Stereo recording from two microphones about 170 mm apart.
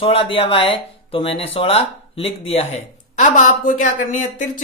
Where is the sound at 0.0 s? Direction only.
35° left (ahead or behind).